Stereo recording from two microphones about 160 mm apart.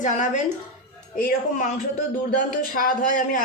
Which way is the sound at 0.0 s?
50° left (ahead or behind).